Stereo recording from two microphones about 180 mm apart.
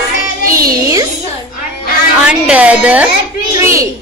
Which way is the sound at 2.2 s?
5° right (ahead or behind).